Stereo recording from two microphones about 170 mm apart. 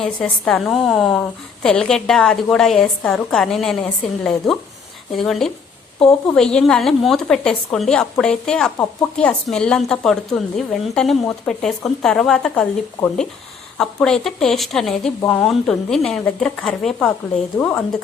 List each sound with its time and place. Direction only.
0.0 s speech: 5° left (ahead or behind)